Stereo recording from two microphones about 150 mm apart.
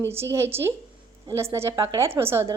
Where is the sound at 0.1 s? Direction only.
15° right (ahead or behind).